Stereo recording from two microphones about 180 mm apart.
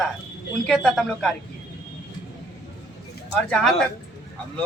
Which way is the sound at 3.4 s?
5° left (ahead or behind).